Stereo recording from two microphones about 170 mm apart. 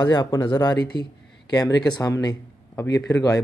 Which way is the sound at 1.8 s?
20° left (ahead or behind).